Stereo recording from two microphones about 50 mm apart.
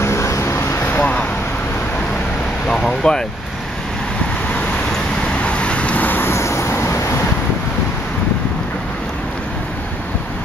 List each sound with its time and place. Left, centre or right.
0.0 s vehicle: left
2.7 s vehicle: centre
5.4 s vehicle: left
6.0 s vehicle: left
6.3 s vehicle: left